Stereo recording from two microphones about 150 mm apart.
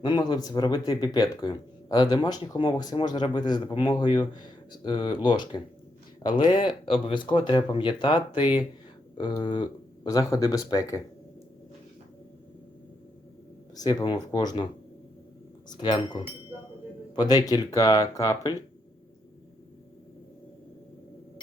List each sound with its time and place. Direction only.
0.0 s speech: 30° left (ahead or behind)
13.7 s speech: 25° left (ahead or behind)
15.7 s speech: 30° left (ahead or behind)